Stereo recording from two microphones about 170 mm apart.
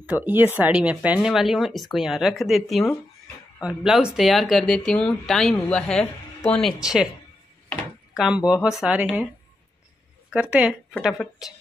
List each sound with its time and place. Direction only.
0.0 s speech: 10° right (ahead or behind)
8.5 s speech: 5° right (ahead or behind)
10.3 s speech: 5° right (ahead or behind)